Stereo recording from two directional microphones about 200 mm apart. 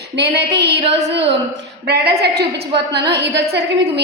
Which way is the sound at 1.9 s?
55° right (ahead or behind).